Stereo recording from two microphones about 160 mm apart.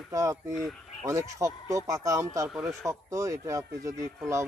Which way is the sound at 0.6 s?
Centre (ahead or behind).